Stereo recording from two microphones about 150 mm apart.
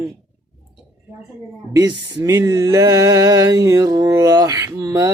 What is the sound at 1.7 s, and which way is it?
Speech, 25° right (ahead or behind).